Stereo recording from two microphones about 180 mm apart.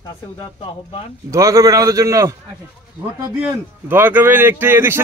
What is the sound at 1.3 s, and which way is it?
A man's voice, 15° right (ahead or behind).